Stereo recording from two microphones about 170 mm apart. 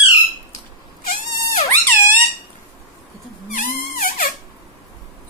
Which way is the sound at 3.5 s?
55° left (ahead or behind).